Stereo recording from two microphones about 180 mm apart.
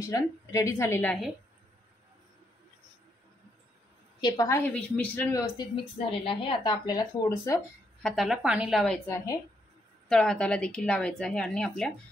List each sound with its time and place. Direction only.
0.0 s a woman's voice: 20° left (ahead or behind)
4.2 s a woman's voice: 15° left (ahead or behind)
5.9 s speech: 30° left (ahead or behind)
8.0 s a woman's voice: centre (ahead or behind)
9.1 s speech: 20° left (ahead or behind)
10.0 s a woman's voice: 5° left (ahead or behind)